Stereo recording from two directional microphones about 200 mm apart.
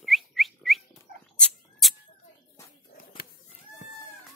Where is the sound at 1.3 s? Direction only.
5° left (ahead or behind).